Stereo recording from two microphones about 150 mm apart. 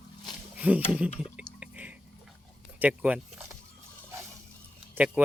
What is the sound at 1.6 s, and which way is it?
Drip, 10° right (ahead or behind).